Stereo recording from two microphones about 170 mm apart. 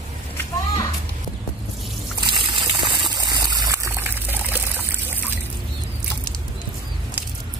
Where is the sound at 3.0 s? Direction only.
25° right (ahead or behind).